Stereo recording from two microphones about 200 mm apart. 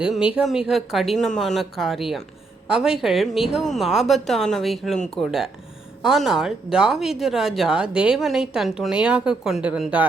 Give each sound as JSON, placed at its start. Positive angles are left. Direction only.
{"t": 0.0, "sound": "speech", "side_deg": -5}